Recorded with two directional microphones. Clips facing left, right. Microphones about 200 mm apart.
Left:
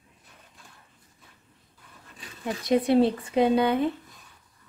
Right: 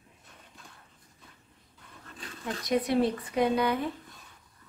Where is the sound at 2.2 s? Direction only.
10° left (ahead or behind).